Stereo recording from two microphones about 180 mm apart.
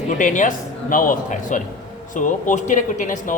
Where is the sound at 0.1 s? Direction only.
45° left (ahead or behind).